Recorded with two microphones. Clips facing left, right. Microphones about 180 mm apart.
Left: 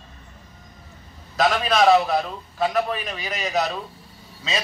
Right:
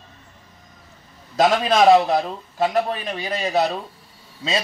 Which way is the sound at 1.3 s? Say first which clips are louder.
Right 3 dB; 25° right (ahead or behind).